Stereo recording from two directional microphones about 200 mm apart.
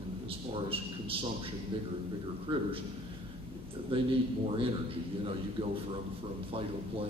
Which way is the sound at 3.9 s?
25° right (ahead or behind).